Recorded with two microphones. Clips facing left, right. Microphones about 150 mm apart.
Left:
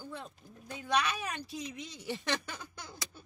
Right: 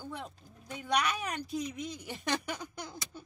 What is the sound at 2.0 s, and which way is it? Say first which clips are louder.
Speech: even; 15° right (ahead or behind).